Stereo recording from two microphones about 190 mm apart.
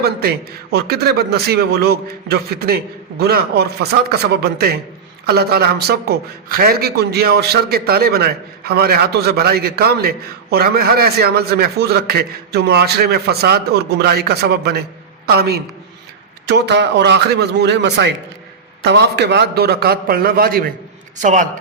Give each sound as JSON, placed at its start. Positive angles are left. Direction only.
{"t": 0.0, "sound": "a man's voice", "side_deg": -55}
{"t": 21.2, "sound": "a man's voice", "side_deg": -40}